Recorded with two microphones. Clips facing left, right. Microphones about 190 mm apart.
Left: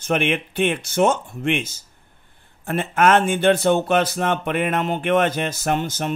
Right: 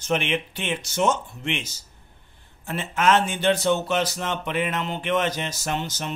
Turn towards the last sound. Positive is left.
turn(degrees=50)  # may be behind; listen again after turning